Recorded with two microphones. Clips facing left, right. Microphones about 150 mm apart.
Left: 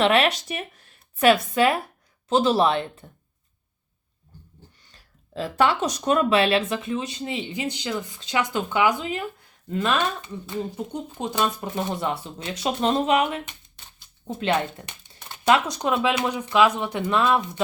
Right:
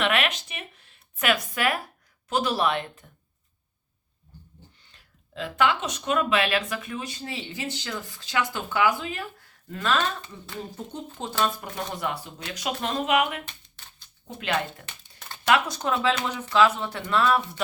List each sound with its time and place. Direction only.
0.0 s speech: 30° left (ahead or behind)
4.9 s speech: 35° left (ahead or behind)
14.8 s a sound: 20° left (ahead or behind)
15.7 s speech: 15° left (ahead or behind)